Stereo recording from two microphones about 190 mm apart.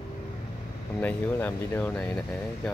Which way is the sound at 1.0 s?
10° left (ahead or behind).